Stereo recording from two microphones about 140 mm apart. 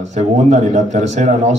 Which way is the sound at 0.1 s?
55° right (ahead or behind).